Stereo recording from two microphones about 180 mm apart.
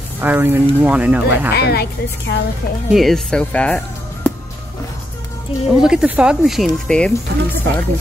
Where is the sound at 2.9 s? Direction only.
Centre (ahead or behind).